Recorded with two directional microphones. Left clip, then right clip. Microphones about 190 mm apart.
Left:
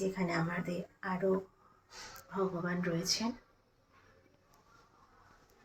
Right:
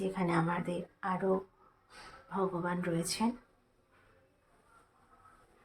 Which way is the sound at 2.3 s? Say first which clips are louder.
Right 2 dB; 10° right (ahead or behind).